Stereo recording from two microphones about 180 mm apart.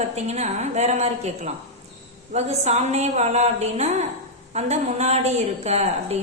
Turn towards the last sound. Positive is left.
turn(degrees=-35)  # may be behind; listen again after turning